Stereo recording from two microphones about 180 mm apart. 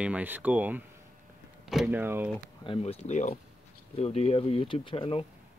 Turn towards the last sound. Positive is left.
turn(degrees=30)  # may be behind; listen again after turning